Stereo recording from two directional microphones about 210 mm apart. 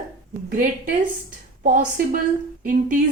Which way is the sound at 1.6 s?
40° right (ahead or behind).